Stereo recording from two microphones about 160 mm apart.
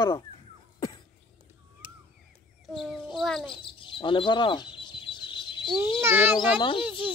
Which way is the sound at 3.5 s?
30° left (ahead or behind).